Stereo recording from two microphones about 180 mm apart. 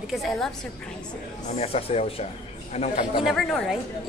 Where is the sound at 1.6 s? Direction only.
35° left (ahead or behind).